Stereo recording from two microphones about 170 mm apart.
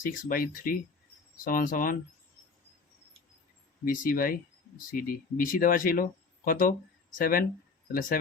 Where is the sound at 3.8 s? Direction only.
55° left (ahead or behind).